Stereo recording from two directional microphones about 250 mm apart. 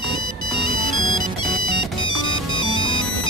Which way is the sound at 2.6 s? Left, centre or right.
Centre.